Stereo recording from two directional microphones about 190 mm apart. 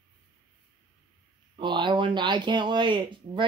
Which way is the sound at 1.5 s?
25° right (ahead or behind).